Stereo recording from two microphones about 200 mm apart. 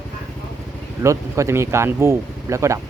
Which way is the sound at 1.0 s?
15° right (ahead or behind).